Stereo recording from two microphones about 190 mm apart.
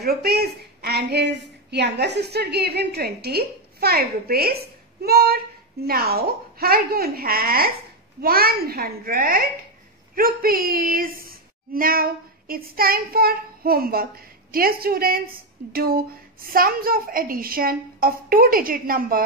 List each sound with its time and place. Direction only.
0.0 s a woman's voice: 55° right (ahead or behind)